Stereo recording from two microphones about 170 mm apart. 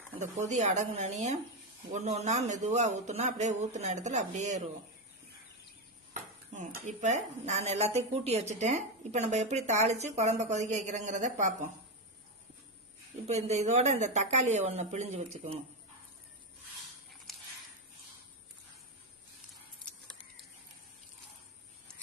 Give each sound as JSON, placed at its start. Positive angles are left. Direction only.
{"t": 0.2, "sound": "a woman's voice", "side_deg": -45}
{"t": 6.5, "sound": "a woman's voice", "side_deg": -45}
{"t": 13.2, "sound": "speech", "side_deg": -40}
{"t": 19.5, "sound": "a sound", "side_deg": 0}